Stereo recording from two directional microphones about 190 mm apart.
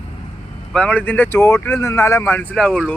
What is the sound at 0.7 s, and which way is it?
Speech, 5° left (ahead or behind).